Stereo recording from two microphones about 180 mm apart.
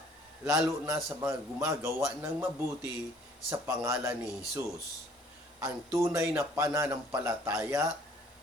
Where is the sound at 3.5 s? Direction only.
15° right (ahead or behind).